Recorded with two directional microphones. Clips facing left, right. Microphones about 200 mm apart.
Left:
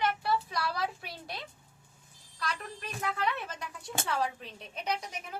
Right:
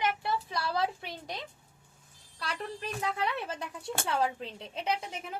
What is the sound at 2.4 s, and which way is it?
Speech, 30° right (ahead or behind).